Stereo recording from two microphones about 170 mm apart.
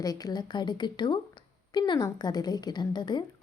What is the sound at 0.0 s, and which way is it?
A woman's voice, 20° left (ahead or behind).